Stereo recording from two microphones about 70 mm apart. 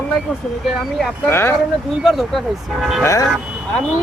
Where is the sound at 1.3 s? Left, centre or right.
Left.